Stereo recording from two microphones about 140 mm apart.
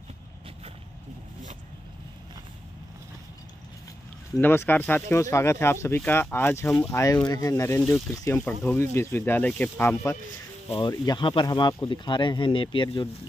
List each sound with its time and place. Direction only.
4.4 s speech: 15° left (ahead or behind)
10.7 s speech: 30° left (ahead or behind)